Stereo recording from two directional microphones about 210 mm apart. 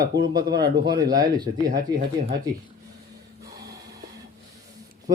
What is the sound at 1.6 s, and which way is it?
Speech, 40° right (ahead or behind).